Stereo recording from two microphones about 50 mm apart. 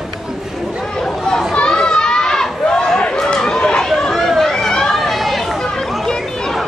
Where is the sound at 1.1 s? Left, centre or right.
Centre.